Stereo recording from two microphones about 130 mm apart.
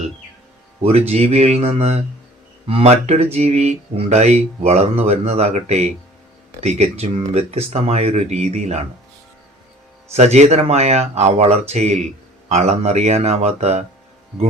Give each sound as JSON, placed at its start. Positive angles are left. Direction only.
{"t": 0.8, "sound": "speech", "side_deg": -50}
{"t": 10.1, "sound": "speech", "side_deg": -55}